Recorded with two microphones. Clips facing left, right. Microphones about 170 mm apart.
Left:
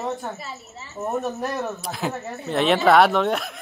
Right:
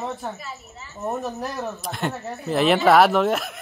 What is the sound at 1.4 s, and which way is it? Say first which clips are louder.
Speech: left 2 dB; centre (ahead or behind).